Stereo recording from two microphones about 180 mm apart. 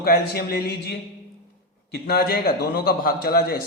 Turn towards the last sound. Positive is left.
turn(degrees=55)  # may be behind; listen again after turning